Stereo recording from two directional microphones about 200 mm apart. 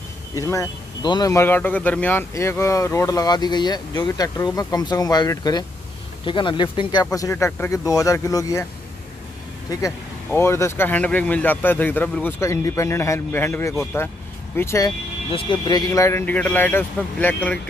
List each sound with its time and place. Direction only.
0.4 s speech: 15° left (ahead or behind)
9.7 s speech: 15° left (ahead or behind)